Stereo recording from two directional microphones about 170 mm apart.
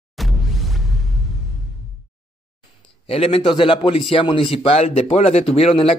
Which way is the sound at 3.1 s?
35° left (ahead or behind).